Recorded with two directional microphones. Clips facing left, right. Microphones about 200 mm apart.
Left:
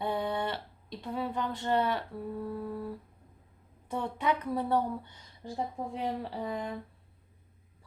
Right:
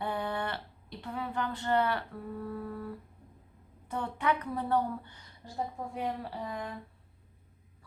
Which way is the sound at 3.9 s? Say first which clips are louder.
Left 1 dB; 15° left (ahead or behind).